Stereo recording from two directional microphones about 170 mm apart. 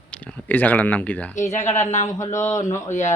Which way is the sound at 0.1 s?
10° left (ahead or behind).